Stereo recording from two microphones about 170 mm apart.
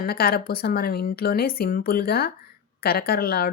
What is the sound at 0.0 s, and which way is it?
A woman's voice, 65° left (ahead or behind).